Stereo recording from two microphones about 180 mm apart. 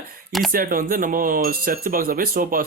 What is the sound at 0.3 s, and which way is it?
Speech, centre (ahead or behind).